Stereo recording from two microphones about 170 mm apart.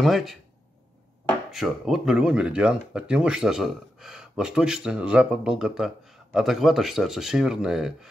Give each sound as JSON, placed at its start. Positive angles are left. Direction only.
{"t": 0.0, "sound": "speech", "side_deg": 0}
{"t": 1.5, "sound": "speech", "side_deg": 0}